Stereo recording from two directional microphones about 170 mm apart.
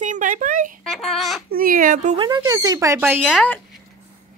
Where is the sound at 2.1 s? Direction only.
25° right (ahead or behind); by 3.4 s 10° right (ahead or behind).